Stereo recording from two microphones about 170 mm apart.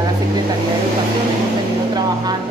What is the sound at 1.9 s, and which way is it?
Speech, 25° right (ahead or behind).